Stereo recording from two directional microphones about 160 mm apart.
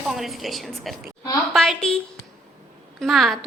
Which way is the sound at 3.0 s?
Centre (ahead or behind).